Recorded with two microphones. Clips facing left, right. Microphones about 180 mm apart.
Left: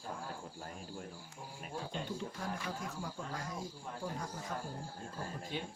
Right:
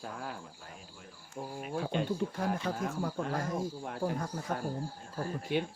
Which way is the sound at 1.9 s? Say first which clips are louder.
Right 10 dB; 65° right (ahead or behind).